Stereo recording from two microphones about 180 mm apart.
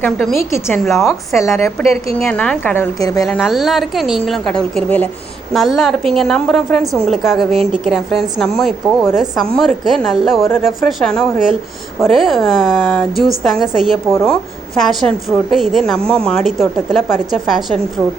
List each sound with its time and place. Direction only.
0.0 s a woman's voice: centre (ahead or behind)
1.4 s a woman's voice: 15° left (ahead or behind)
3.2 s a woman's voice: centre (ahead or behind)